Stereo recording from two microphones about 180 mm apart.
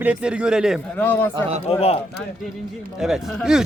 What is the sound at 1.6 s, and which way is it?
Speech, 35° left (ahead or behind).